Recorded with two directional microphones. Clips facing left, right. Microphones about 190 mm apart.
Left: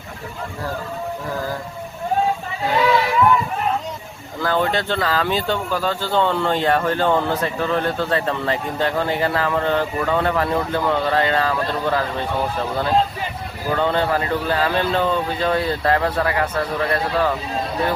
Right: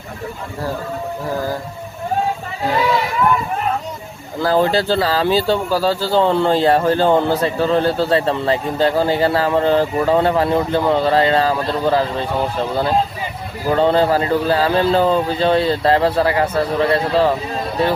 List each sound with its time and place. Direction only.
4.4 s speech: 30° right (ahead or behind)
13.7 s speech: 35° right (ahead or behind)